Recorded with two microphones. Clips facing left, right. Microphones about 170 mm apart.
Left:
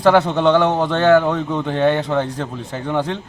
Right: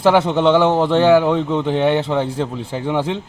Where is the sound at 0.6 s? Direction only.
30° right (ahead or behind).